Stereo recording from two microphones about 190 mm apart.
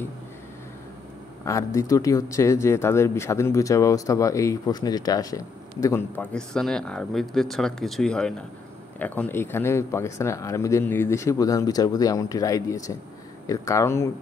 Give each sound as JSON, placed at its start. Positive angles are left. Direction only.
{"t": 1.4, "sound": "speech", "side_deg": 15}